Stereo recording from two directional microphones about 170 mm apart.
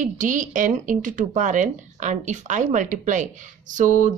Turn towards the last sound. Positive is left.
turn(degrees=-50)  # may be behind; listen again after turning